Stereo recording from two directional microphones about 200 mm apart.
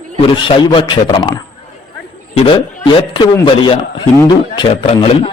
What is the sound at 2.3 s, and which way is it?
A man's voice, 25° left (ahead or behind).